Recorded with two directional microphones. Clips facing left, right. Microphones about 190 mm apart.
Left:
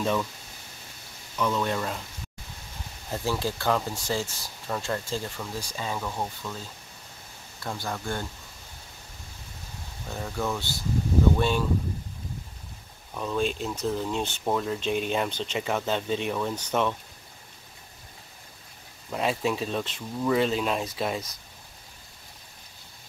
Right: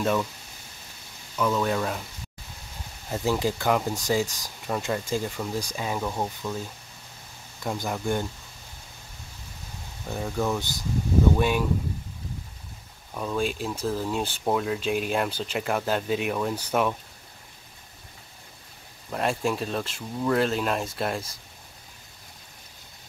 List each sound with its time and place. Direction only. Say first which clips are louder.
0.0 s speech: right 2 dB; 5° right (ahead or behind)
1.4 s speech: right 2 dB; 5° right (ahead or behind)
3.1 s speech: right 3 dB; 15° right (ahead or behind)
7.6 s speech: right 4 dB; 15° right (ahead or behind)
10.0 s speech: right 3 dB; 5° right (ahead or behind)
13.1 s speech: even; 5° right (ahead or behind)
19.0 s speech: even; centre (ahead or behind)